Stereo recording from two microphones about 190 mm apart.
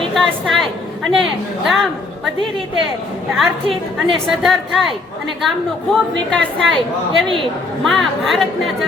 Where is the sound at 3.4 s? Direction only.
Centre (ahead or behind).